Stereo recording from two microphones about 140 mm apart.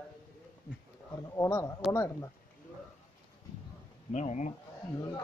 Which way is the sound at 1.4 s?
20° left (ahead or behind).